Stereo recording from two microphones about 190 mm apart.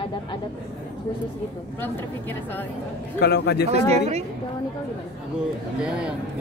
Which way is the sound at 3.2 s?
60° left (ahead or behind).